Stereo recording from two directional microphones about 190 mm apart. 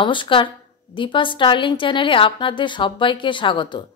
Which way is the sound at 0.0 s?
25° left (ahead or behind).